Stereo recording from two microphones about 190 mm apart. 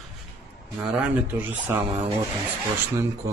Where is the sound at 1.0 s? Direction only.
10° right (ahead or behind).